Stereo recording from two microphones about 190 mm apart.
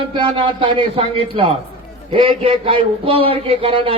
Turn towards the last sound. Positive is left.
turn(degrees=-30)  # may be behind; listen again after turning